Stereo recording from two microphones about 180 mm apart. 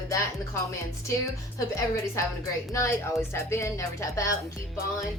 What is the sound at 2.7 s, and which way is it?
Speech, 15° left (ahead or behind).